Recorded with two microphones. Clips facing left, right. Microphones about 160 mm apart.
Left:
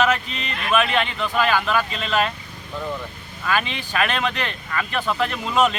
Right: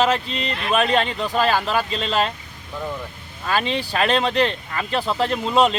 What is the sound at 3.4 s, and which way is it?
Speech, 35° right (ahead or behind).